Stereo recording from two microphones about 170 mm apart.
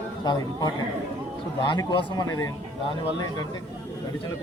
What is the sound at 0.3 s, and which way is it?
A man's voice, 25° left (ahead or behind).